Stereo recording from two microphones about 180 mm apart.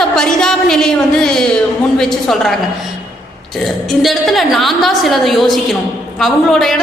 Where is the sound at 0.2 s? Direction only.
5° left (ahead or behind).